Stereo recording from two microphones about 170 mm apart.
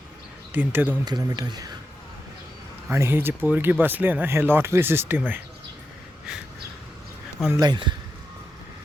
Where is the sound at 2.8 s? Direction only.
15° right (ahead or behind).